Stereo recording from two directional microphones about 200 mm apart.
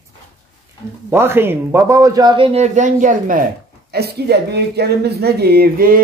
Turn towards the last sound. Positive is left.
turn(degrees=-45)  # may be behind; listen again after turning